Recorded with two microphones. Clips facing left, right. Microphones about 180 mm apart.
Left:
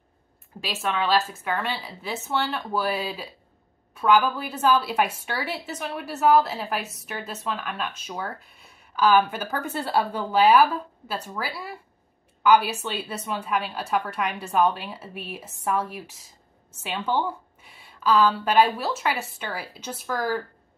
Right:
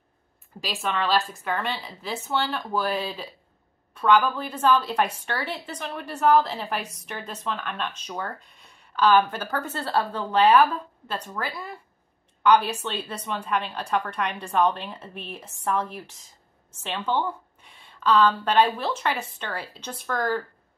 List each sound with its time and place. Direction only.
0.6 s a woman's voice: centre (ahead or behind)